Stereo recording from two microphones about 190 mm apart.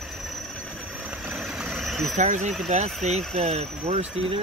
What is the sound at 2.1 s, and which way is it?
Speech, 40° right (ahead or behind).